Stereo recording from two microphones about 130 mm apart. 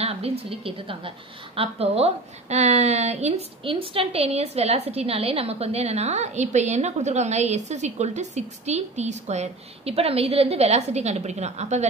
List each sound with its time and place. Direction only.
0.0 s a woman's voice: 50° right (ahead or behind)